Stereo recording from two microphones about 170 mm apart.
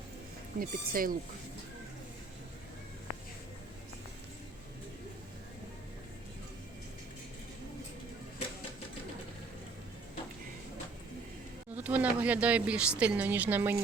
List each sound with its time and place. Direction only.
0.6 s speech: 55° right (ahead or behind)
11.7 s a sound: 10° right (ahead or behind)
13.0 s speech: 10° right (ahead or behind)